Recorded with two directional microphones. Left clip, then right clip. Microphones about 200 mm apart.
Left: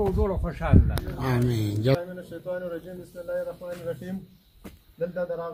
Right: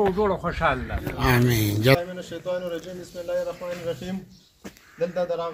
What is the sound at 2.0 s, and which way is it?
A man's voice, 5° left (ahead or behind).